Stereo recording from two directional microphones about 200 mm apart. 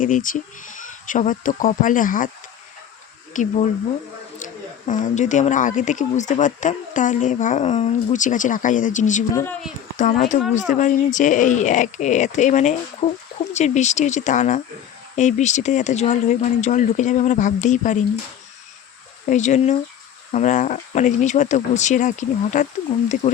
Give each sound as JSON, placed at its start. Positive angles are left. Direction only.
{"t": 0.0, "sound": "speech", "side_deg": 40}
{"t": 3.3, "sound": "speech", "side_deg": 35}
{"t": 9.3, "sound": "speech", "side_deg": 10}
{"t": 10.0, "sound": "speech", "side_deg": 35}
{"t": 19.2, "sound": "speech", "side_deg": 35}